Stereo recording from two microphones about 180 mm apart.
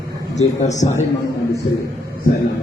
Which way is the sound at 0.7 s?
40° left (ahead or behind).